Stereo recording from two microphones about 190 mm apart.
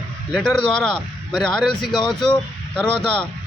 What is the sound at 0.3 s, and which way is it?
A man's voice, centre (ahead or behind).